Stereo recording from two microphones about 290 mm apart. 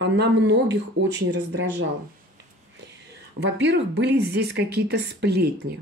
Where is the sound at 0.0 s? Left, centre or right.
Right.